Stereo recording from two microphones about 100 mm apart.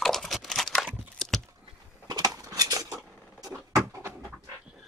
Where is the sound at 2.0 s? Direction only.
45° right (ahead or behind).